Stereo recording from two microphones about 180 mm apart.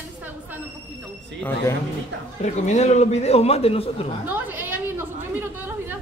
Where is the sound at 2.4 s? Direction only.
40° left (ahead or behind).